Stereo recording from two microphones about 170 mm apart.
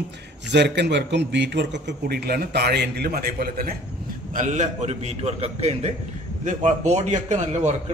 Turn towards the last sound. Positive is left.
turn(degrees=-45)  # may be behind; listen again after turning